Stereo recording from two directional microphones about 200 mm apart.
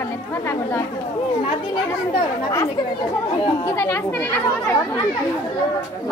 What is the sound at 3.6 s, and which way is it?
A woman's voice, 10° left (ahead or behind).